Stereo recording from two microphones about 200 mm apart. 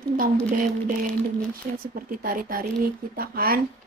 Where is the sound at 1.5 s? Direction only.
45° right (ahead or behind).